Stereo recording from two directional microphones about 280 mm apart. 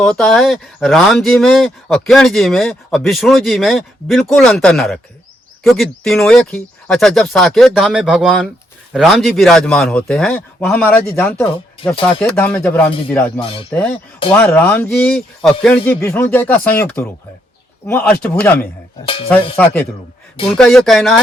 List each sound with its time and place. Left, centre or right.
0.0 s speech: centre
13.4 s speech: centre
13.7 s speech: centre
19.0 s speech: centre
19.5 s speech: centre
20.3 s speech: centre
20.6 s speech: centre